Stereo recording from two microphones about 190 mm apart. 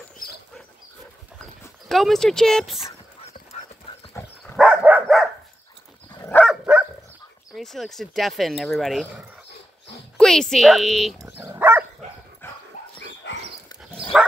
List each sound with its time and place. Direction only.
1.9 s speech: centre (ahead or behind)
4.6 s dog: 5° right (ahead or behind)
6.1 s dog: 15° left (ahead or behind)
6.4 s dog: 5° right (ahead or behind)
7.5 s speech: centre (ahead or behind)
11.4 s dog: 10° right (ahead or behind)
12.4 s dog: 10° left (ahead or behind)
13.2 s dog: 70° left (ahead or behind)
14.1 s bow-wow: centre (ahead or behind)